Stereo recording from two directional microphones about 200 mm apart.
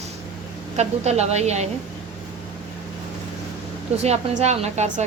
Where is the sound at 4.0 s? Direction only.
35° right (ahead or behind).